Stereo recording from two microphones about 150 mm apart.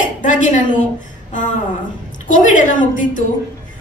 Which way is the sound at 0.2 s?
55° left (ahead or behind).